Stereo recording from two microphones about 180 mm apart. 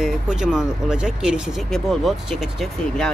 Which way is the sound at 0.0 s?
5° right (ahead or behind).